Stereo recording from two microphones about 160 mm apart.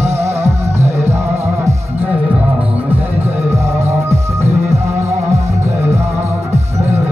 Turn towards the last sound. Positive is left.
turn(degrees=-15)  # may be behind; listen again after turning